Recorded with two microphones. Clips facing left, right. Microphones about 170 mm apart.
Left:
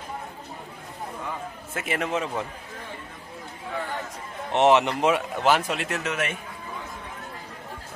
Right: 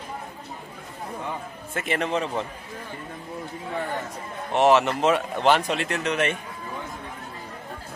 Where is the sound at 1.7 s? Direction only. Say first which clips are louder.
Right 2 dB; 5° left (ahead or behind).